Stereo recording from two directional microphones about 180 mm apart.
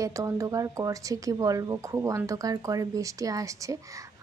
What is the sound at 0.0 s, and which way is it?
A woman's voice, 20° right (ahead or behind).